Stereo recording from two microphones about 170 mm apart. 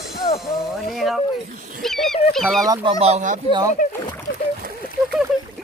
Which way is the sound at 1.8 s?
Centre (ahead or behind).